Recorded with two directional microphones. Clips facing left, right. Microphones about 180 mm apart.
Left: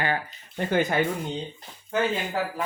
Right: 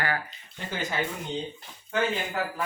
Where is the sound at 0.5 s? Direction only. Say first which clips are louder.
Left 9 dB; 55° left (ahead or behind).